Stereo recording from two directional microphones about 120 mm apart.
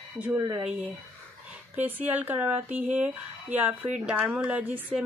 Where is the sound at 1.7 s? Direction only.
15° right (ahead or behind).